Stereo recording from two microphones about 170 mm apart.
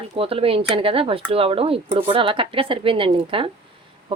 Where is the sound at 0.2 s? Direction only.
35° right (ahead or behind).